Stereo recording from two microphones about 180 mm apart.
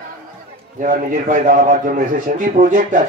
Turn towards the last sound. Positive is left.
turn(degrees=-45)  # may be behind; listen again after turning